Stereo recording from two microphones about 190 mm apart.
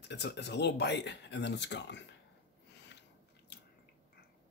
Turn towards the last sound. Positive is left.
turn(degrees=65)  # may be behind; listen again after turning